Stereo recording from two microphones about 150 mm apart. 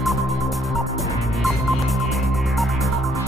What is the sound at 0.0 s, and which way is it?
Music, centre (ahead or behind).